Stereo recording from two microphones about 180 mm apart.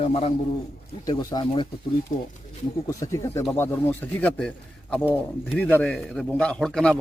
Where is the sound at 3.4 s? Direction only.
5° left (ahead or behind).